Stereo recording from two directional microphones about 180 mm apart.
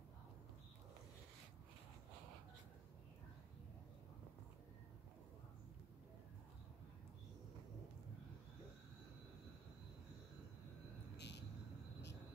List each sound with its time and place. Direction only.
11.1 s vehicle: 70° left (ahead or behind)